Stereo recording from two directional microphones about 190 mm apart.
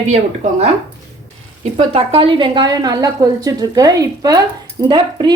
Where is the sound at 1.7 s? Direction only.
30° right (ahead or behind).